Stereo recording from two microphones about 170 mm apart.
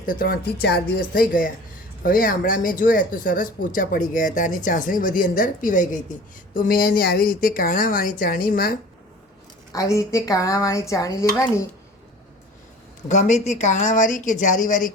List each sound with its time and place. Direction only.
0.0 s speech: 55° left (ahead or behind)
1.3 s speech: 55° left (ahead or behind)
9.9 s speech: 20° left (ahead or behind)
13.1 s speech: 45° left (ahead or behind)